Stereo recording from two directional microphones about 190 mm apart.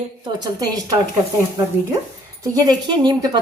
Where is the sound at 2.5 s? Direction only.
20° right (ahead or behind).